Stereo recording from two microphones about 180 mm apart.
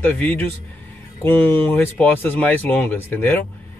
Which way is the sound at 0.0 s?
10° left (ahead or behind).